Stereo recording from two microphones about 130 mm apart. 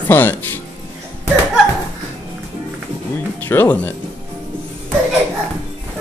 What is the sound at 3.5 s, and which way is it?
Speech, 15° left (ahead or behind).